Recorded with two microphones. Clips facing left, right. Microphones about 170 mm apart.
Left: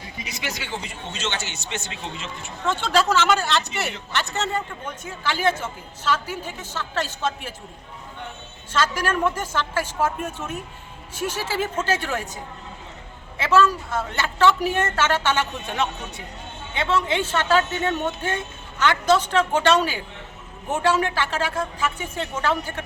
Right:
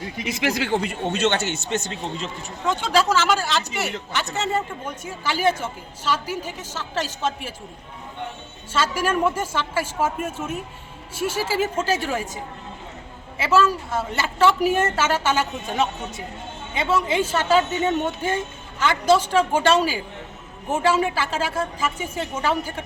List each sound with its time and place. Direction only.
0.3 s a man's voice: 55° right (ahead or behind); by 2.3 s 40° right (ahead or behind)
2.6 s a man's voice: 10° right (ahead or behind)
8.7 s a man's voice: 5° right (ahead or behind)
13.4 s a man's voice: 10° right (ahead or behind)